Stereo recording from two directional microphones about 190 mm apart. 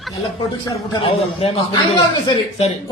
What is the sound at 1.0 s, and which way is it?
Speech, 25° left (ahead or behind).